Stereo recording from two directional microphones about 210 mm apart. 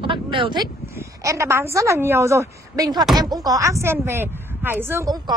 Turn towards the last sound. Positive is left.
turn(degrees=-15)  # may be behind; listen again after turning